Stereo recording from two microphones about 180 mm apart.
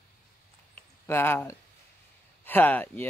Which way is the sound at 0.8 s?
10° left (ahead or behind).